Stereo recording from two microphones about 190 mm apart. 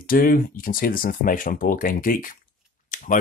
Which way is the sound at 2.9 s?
45° left (ahead or behind).